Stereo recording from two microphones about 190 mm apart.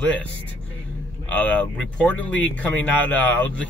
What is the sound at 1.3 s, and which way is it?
Speech, 5° left (ahead or behind).